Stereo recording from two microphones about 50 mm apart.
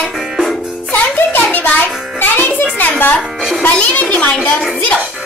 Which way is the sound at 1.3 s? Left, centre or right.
Left.